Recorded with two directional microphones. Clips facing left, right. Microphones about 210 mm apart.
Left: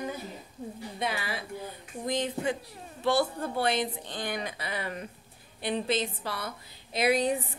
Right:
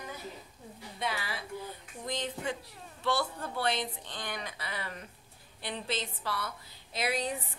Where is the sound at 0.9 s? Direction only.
15° left (ahead or behind).